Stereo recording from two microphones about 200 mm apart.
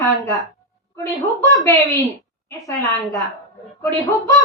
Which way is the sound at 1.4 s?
15° left (ahead or behind).